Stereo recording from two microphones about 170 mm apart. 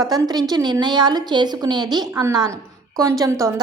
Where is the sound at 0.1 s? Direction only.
25° right (ahead or behind).